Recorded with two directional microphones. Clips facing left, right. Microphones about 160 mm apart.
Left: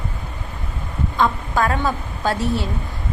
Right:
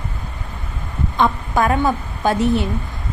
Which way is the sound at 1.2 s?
20° right (ahead or behind).